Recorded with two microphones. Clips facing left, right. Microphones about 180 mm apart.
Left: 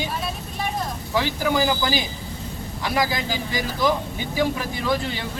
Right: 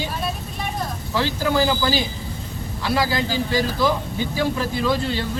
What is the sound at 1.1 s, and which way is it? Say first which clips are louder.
A man's voice: right 1 dB; 15° left (ahead or behind).